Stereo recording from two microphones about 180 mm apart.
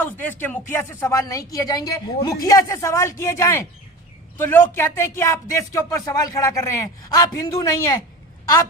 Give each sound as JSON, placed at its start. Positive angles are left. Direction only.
{"t": 0.0, "sound": "speech", "side_deg": 10}